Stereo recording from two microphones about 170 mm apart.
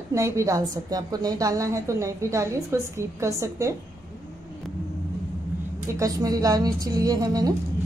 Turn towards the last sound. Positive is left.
turn(degrees=-20)  # may be behind; listen again after turning